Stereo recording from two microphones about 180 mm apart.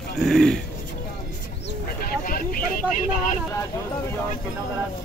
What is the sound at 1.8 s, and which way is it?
Vehicle, 55° left (ahead or behind).